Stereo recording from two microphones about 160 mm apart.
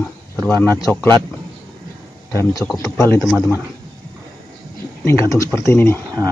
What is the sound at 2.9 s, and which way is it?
Speech, 20° left (ahead or behind).